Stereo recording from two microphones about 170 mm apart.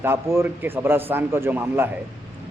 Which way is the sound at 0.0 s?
15° right (ahead or behind).